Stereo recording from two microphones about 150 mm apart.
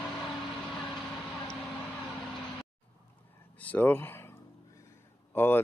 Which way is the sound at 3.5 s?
10° left (ahead or behind).